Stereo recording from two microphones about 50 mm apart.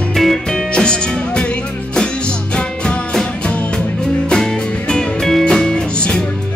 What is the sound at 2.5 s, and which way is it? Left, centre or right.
Music, centre.